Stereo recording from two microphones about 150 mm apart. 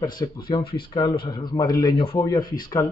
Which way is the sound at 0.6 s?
90° left.